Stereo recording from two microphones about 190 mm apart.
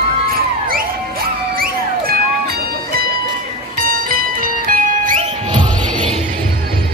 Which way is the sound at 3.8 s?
45° right (ahead or behind).